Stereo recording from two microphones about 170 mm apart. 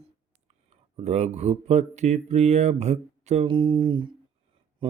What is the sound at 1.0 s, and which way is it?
Speech, 40° right (ahead or behind).